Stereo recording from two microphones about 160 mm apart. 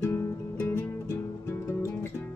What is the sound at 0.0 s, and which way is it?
Music, 15° left (ahead or behind).